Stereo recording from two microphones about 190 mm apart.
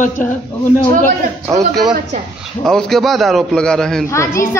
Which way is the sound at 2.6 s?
Centre (ahead or behind).